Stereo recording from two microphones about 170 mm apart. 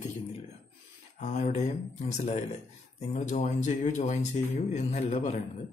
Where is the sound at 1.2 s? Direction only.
40° left (ahead or behind).